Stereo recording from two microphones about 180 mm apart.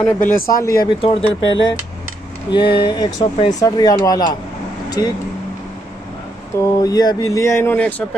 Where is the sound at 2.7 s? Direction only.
25° left (ahead or behind).